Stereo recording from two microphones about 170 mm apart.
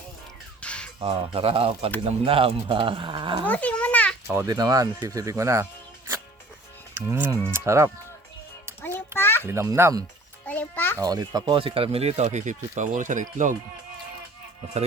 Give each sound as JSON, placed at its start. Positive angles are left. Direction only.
{"t": 0.6, "sound": "music", "side_deg": 5}
{"t": 0.9, "sound": "speech", "side_deg": -30}
{"t": 3.4, "sound": "a sound", "side_deg": 10}
{"t": 4.3, "sound": "speech", "side_deg": -20}
{"t": 6.9, "sound": "speech", "side_deg": -15}
{"t": 8.8, "sound": "a sound", "side_deg": 10}
{"t": 9.5, "sound": "speech", "side_deg": -15}
{"t": 10.4, "sound": "music", "side_deg": 10}
{"t": 10.9, "sound": "speech", "side_deg": -20}